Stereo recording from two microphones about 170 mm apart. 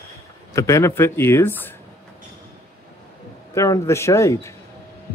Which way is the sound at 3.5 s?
20° left (ahead or behind).